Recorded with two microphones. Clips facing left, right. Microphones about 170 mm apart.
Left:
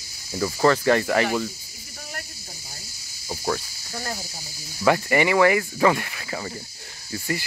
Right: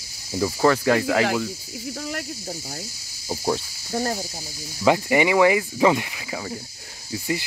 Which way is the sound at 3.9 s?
35° right (ahead or behind).